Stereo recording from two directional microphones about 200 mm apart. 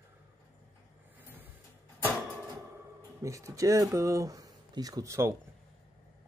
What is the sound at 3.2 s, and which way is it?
Speech, 15° right (ahead or behind).